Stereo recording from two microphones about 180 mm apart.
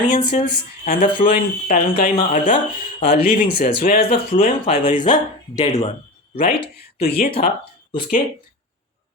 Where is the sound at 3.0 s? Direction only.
50° left (ahead or behind).